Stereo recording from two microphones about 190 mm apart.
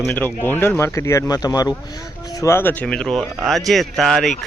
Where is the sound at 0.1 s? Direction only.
10° left (ahead or behind).